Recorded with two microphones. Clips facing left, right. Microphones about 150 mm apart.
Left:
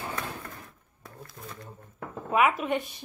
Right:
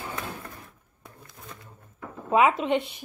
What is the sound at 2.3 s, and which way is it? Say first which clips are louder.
Speech: right 3 dB; 25° right (ahead or behind).